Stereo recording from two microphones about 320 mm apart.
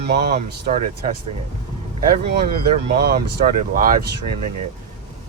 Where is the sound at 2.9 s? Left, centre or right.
Right.